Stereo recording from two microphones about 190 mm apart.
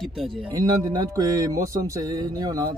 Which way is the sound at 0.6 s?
20° right (ahead or behind).